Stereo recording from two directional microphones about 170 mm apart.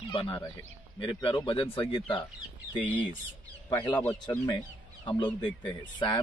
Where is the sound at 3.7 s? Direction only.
25° left (ahead or behind).